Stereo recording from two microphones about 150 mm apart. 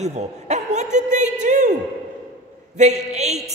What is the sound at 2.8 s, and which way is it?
Speech, 50° right (ahead or behind).